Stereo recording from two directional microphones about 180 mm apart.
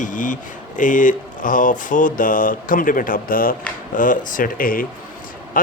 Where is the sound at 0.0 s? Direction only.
45° left (ahead or behind).